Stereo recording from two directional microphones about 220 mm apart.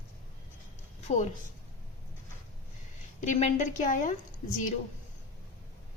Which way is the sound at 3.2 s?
35° left (ahead or behind).